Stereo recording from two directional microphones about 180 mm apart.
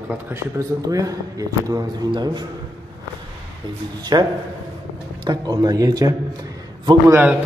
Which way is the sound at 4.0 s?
20° right (ahead or behind).